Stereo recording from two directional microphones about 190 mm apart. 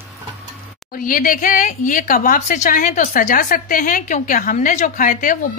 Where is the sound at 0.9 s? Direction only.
45° left (ahead or behind).